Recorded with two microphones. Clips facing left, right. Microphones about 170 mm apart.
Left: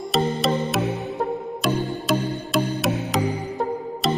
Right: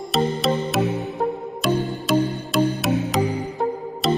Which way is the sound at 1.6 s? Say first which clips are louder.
Right 2 dB; centre (ahead or behind).